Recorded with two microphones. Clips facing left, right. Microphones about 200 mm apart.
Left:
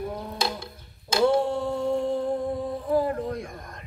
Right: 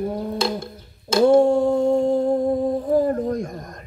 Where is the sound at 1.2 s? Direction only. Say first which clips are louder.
Right 8 dB; 45° right (ahead or behind).